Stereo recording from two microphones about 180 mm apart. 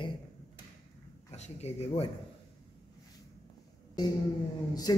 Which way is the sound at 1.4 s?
35° left (ahead or behind).